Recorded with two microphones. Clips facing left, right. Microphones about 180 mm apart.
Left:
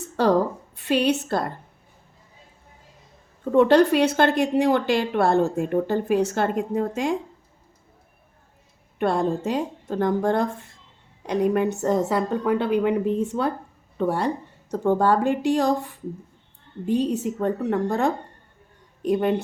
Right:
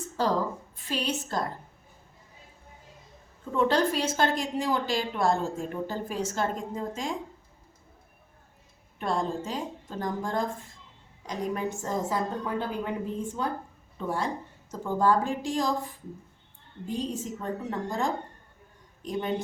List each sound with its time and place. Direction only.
0.0 s a sound: 65° left (ahead or behind)
0.8 s speech: 65° left (ahead or behind)
3.4 s speech: 65° left (ahead or behind)
9.0 s speech: 65° left (ahead or behind)